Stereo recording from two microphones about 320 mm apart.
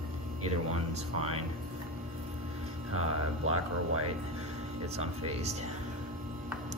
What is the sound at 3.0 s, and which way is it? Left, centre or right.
Speech, right.